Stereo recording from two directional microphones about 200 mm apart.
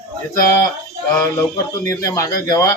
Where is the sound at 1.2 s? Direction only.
15° left (ahead or behind).